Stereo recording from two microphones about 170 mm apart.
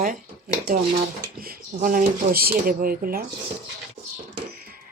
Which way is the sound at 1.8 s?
55° right (ahead or behind).